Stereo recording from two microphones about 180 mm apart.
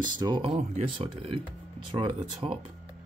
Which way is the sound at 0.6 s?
35° right (ahead or behind).